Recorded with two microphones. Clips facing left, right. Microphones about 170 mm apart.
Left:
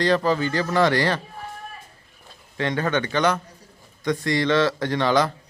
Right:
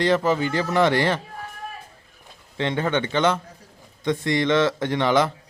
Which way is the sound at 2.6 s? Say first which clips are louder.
Even; 20° right (ahead or behind).